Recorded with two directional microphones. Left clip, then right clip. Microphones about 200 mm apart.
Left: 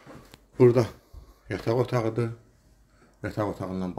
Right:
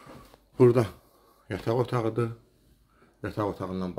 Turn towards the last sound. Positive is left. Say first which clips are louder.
# even
turn(degrees=0)  # may be behind; listen again after turning